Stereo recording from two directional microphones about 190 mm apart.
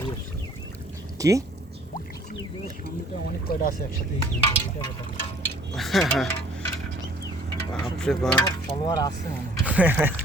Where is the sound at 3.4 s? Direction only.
50° left (ahead or behind).